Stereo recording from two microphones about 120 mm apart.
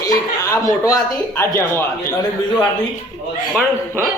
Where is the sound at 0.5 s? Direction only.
30° left (ahead or behind).